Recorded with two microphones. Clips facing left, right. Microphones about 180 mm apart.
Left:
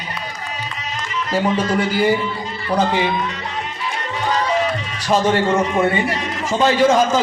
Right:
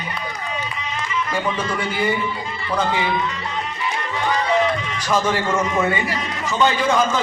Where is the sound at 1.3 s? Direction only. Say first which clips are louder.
Left 8 dB; 35° left (ahead or behind).